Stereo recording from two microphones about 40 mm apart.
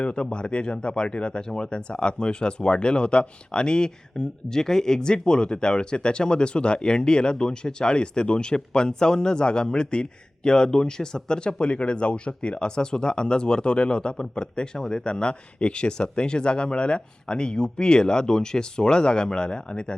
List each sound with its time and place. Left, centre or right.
0.0 s speech: left